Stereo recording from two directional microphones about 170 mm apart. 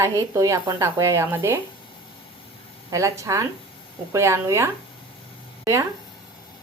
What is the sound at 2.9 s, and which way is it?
Speech, 20° right (ahead or behind).